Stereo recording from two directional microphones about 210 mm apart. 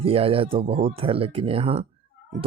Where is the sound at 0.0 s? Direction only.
25° right (ahead or behind).